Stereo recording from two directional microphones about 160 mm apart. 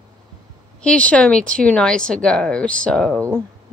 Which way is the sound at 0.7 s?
5° left (ahead or behind).